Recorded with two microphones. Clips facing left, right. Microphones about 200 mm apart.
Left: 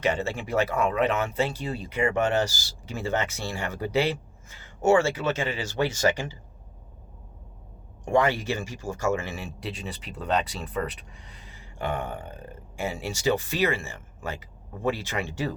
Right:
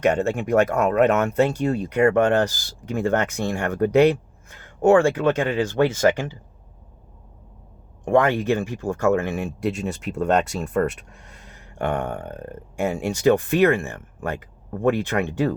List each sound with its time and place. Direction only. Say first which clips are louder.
0.1 s speech: right 7 dB; 50° right (ahead or behind)
8.0 s speech: right 5 dB; 55° right (ahead or behind)